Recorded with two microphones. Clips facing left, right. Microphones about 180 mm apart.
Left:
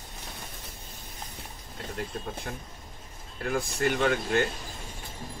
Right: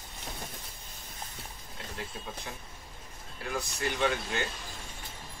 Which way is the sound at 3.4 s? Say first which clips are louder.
Left 6 dB; 55° left (ahead or behind).